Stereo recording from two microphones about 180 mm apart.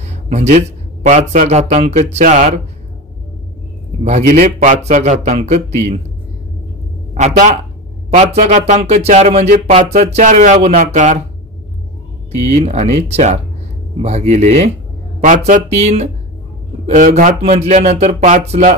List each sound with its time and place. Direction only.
0.0 s a man's voice: 40° right (ahead or behind)
4.0 s speech: 40° right (ahead or behind)
7.2 s speech: 45° right (ahead or behind)
12.4 s speech: 40° right (ahead or behind)